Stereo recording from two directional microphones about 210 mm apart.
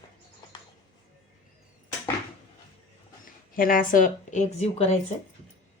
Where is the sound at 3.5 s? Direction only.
40° left (ahead or behind).